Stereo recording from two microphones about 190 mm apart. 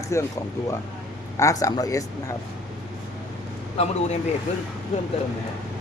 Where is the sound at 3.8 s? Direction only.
30° left (ahead or behind).